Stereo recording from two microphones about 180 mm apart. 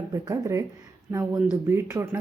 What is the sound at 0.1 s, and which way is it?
Speech, 20° right (ahead or behind).